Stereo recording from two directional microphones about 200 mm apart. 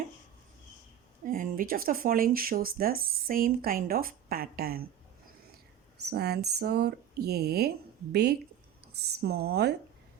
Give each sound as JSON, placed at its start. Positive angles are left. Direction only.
{"t": 1.2, "sound": "speech", "side_deg": -45}
{"t": 6.0, "sound": "speech", "side_deg": -55}